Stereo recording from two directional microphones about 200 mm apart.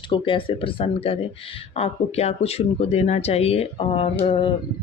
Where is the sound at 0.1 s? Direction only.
25° left (ahead or behind).